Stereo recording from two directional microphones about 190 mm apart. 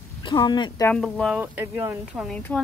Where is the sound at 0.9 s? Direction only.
Centre (ahead or behind).